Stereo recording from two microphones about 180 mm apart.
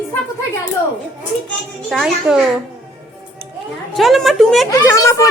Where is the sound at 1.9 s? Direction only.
Centre (ahead or behind).